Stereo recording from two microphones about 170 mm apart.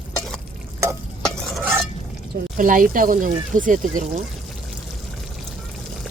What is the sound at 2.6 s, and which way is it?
Speech, 50° right (ahead or behind).